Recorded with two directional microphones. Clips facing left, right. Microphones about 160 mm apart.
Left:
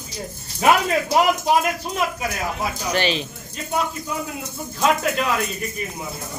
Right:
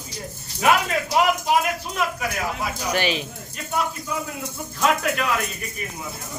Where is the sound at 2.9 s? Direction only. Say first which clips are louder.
Left 1 dB; 10° right (ahead or behind).